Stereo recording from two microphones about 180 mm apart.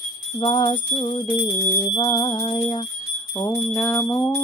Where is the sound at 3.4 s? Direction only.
20° left (ahead or behind).